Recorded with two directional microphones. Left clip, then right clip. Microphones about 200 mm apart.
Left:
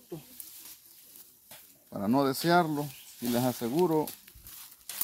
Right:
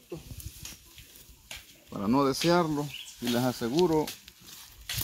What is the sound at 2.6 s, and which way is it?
Speech, 5° left (ahead or behind).